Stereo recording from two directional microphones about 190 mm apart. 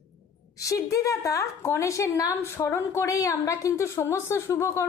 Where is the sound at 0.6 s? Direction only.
15° left (ahead or behind).